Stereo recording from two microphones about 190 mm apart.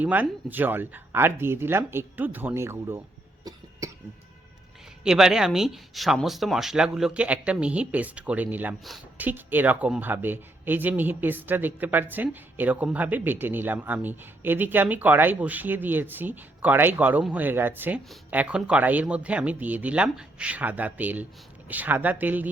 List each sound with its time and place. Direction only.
0.0 s speech: 10° right (ahead or behind)
3.4 s cough: 15° right (ahead or behind)
5.0 s speech: 5° right (ahead or behind)